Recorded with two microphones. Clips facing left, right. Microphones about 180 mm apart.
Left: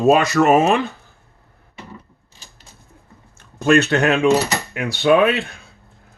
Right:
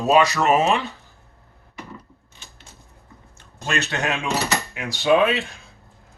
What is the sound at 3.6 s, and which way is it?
Speech, 55° left (ahead or behind).